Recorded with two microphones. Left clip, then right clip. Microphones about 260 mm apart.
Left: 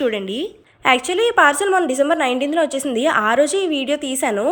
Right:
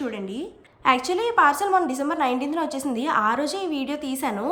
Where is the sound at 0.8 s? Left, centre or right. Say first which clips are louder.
Left 5 dB; centre.